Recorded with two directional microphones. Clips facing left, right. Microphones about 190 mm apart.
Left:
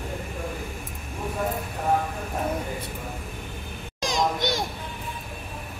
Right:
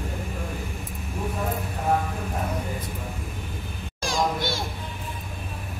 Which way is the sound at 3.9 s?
20° left (ahead or behind).